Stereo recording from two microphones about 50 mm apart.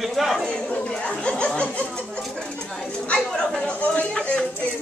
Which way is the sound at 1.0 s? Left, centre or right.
Left.